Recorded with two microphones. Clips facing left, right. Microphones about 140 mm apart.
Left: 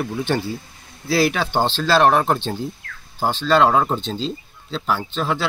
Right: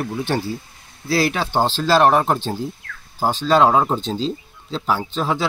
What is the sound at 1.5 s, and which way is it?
Speech, 5° right (ahead or behind).